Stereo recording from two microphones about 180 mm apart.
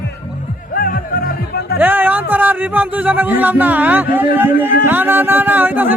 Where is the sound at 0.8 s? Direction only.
55° left (ahead or behind).